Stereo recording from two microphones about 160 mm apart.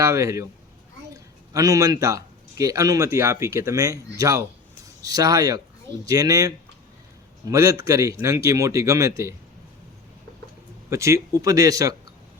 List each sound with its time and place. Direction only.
0.0 s speech: 20° right (ahead or behind)
7.5 s speech: 20° right (ahead or behind)
10.8 s speech: 20° right (ahead or behind)